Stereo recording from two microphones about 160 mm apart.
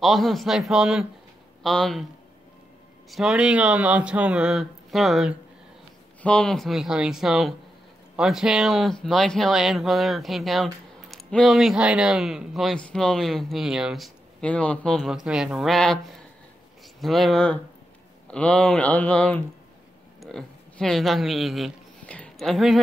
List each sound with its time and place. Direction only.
0.0 s speech: centre (ahead or behind)
3.1 s speech: centre (ahead or behind)